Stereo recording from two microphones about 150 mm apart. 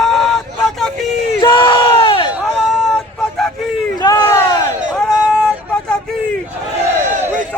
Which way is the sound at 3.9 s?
25° left (ahead or behind).